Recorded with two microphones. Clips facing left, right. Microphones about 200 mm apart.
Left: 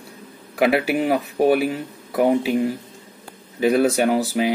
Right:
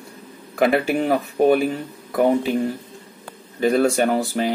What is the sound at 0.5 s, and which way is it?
Speech, 5° left (ahead or behind).